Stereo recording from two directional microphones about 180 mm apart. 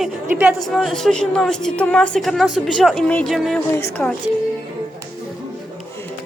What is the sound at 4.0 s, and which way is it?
Speech, 10° left (ahead or behind).